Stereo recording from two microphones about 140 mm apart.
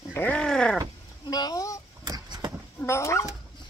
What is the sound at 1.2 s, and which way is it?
Speech, 30° left (ahead or behind).